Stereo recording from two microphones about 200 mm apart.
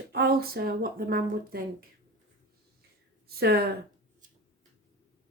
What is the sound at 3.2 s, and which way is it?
Speech, 50° right (ahead or behind).